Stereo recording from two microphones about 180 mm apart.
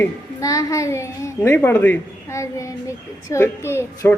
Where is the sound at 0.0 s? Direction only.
15° left (ahead or behind).